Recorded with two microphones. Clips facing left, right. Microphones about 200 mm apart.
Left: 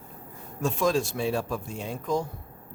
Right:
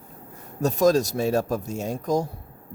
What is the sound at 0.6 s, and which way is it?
Speech, 40° right (ahead or behind).